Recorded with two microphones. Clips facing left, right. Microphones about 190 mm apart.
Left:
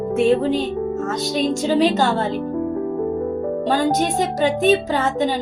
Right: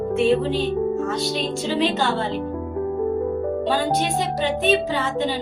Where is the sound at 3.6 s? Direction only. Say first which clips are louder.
Left 5 dB; 45° left (ahead or behind).